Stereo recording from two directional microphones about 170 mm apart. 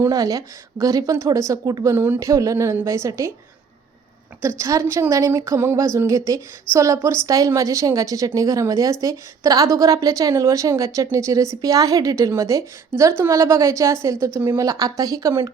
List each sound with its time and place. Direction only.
0.0 s a woman's voice: 20° right (ahead or behind)
4.4 s a woman's voice: 15° right (ahead or behind)